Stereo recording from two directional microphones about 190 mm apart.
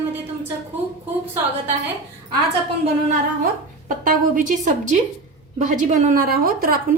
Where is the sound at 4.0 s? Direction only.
45° right (ahead or behind).